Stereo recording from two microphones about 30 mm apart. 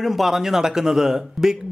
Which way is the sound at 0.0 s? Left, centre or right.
Centre.